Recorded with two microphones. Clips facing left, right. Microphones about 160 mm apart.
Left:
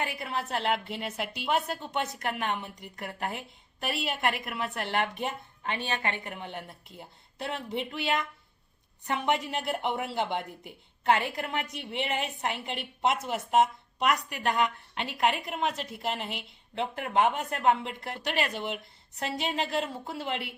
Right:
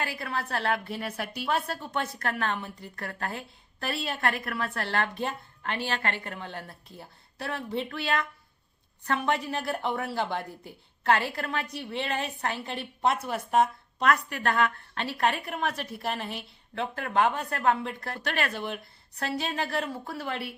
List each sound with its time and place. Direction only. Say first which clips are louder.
0.0 s speech: even; 20° left (ahead or behind)